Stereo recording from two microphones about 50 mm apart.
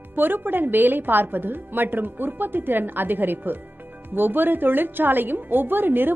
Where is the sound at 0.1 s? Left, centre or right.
Right.